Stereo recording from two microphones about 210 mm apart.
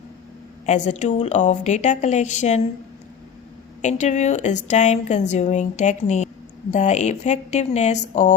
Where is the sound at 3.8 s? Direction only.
35° left (ahead or behind).